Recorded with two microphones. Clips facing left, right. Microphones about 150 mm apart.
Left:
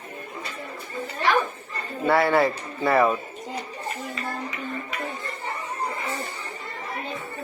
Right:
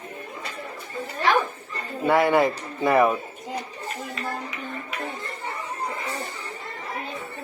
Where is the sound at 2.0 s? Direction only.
15° right (ahead or behind).